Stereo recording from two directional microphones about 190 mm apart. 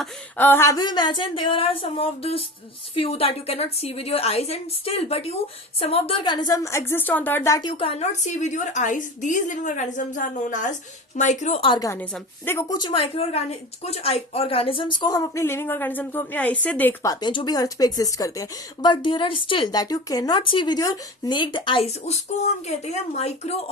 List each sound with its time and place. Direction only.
0.0 s a woman's voice: 10° left (ahead or behind); by 23.6 s 35° left (ahead or behind)